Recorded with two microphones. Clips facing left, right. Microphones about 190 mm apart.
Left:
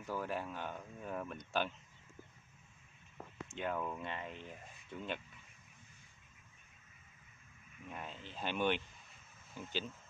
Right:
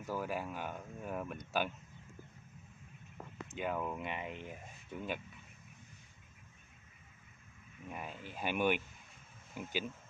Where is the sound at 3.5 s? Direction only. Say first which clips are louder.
Right 2 dB; 10° right (ahead or behind).